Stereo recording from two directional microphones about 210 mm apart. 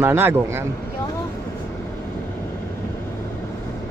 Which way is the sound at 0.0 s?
10° right (ahead or behind).